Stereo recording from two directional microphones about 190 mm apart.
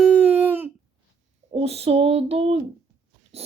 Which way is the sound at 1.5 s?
35° right (ahead or behind).